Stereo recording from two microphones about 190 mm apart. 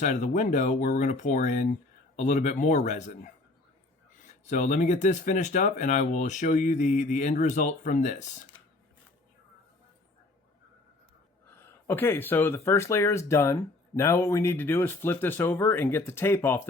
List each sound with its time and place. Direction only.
0.0 s speech: 40° left (ahead or behind)
4.4 s speech: 40° left (ahead or behind)
11.5 s speech: 10° left (ahead or behind)